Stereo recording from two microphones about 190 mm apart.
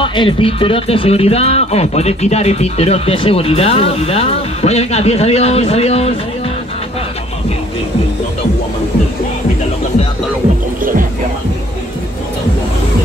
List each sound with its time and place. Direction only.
0.0 s speech: 25° left (ahead or behind)
10.8 s music: 45° right (ahead or behind)